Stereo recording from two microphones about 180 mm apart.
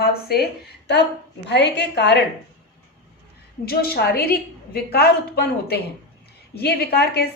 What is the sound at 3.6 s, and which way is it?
A woman's voice, 60° left (ahead or behind).